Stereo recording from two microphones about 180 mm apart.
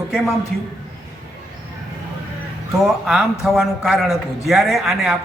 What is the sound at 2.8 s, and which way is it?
A man's voice, centre (ahead or behind).